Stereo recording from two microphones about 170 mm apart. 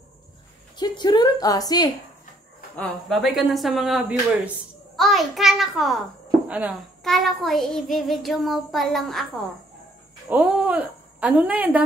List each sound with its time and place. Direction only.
0.7 s a woman's voice: 25° left (ahead or behind)
2.7 s a child's voice: 5° left (ahead or behind)
10.3 s a woman's voice: 10° right (ahead or behind)